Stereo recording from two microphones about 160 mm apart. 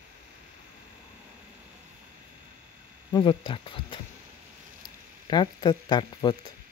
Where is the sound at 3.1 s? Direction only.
30° left (ahead or behind).